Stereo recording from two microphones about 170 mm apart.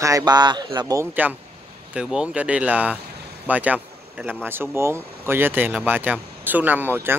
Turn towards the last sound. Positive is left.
turn(degrees=-10)  # may be behind; listen again after turning